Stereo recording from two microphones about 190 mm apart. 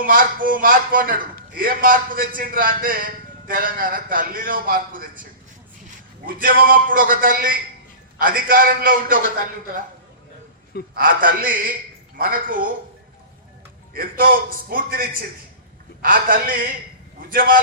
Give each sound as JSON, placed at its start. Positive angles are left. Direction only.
{"t": 0.0, "sound": "a man's voice", "side_deg": -45}
{"t": 6.2, "sound": "a man's voice", "side_deg": -50}
{"t": 10.9, "sound": "a man's voice", "side_deg": -50}
{"t": 13.9, "sound": "a man's voice", "side_deg": -50}